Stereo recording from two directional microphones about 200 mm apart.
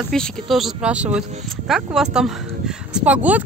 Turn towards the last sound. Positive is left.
turn(degrees=-5)  # may be behind; listen again after turning